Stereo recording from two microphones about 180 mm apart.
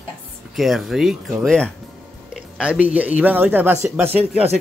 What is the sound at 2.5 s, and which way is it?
Speech, 5° right (ahead or behind).